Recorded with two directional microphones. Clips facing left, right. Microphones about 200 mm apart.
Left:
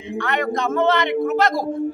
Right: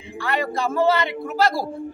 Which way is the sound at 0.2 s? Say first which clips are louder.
Left 1 dB; 10° right (ahead or behind).